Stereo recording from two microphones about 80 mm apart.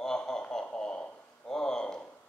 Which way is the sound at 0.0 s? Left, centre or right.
Centre.